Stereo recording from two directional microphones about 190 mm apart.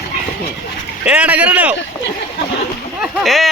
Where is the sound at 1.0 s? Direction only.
5° right (ahead or behind).